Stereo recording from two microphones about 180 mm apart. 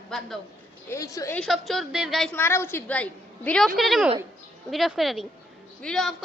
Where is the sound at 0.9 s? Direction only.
20° left (ahead or behind).